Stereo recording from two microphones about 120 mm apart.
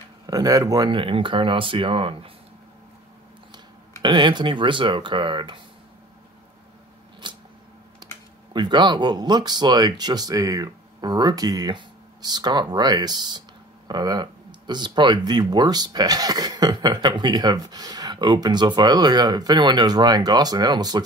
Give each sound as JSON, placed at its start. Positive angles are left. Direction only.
{"t": 0.3, "sound": "speech", "side_deg": -30}
{"t": 0.9, "sound": "speech", "side_deg": -45}
{"t": 4.0, "sound": "speech", "side_deg": -40}
{"t": 7.2, "sound": "camera", "side_deg": -40}
{"t": 8.5, "sound": "speech", "side_deg": -40}